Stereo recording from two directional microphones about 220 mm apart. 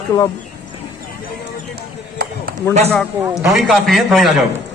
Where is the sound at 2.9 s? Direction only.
5° left (ahead or behind).